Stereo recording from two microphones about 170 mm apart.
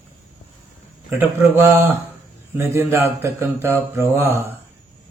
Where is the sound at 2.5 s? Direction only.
15° right (ahead or behind).